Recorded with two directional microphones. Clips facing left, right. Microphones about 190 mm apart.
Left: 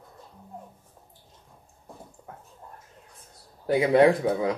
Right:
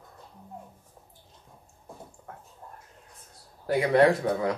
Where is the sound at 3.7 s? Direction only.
20° left (ahead or behind).